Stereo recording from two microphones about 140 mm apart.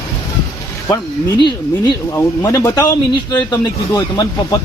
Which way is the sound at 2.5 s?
20° left (ahead or behind).